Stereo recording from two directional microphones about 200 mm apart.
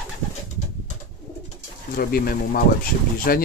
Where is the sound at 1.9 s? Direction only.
45° left (ahead or behind).